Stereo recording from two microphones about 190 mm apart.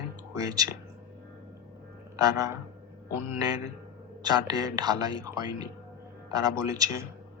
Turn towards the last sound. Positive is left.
turn(degrees=-20)  # may be behind; listen again after turning